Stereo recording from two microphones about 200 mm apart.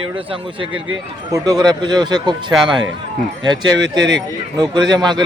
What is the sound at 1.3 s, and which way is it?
Speech, 20° right (ahead or behind).